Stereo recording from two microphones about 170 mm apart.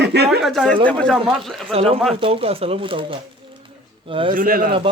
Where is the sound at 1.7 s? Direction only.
35° right (ahead or behind).